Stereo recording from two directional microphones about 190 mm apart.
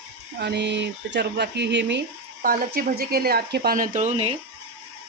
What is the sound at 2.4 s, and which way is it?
Speech, 50° right (ahead or behind).